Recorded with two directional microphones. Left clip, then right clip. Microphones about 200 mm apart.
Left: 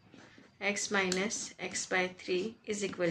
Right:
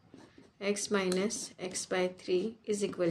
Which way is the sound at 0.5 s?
55° right (ahead or behind).